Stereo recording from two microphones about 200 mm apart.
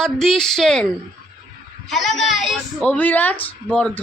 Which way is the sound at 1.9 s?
Centre (ahead or behind).